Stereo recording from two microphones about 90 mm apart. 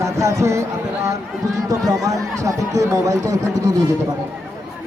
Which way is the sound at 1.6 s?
40° right (ahead or behind).